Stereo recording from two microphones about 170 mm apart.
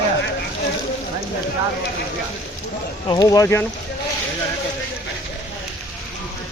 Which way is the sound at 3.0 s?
25° left (ahead or behind).